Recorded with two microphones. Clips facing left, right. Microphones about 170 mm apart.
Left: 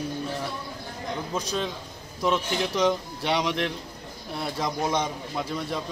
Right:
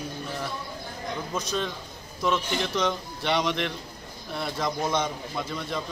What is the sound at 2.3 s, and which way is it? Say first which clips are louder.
Speech: left 1 dB; 10° left (ahead or behind).